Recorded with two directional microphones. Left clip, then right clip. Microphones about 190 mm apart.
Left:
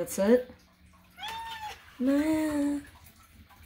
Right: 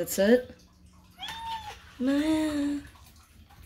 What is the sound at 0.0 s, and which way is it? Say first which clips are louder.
Speech: right 2 dB; 5° left (ahead or behind).